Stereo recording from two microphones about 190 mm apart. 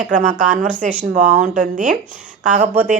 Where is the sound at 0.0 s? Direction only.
40° right (ahead or behind).